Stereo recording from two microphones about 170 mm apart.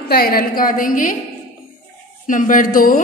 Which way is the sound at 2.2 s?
50° left (ahead or behind).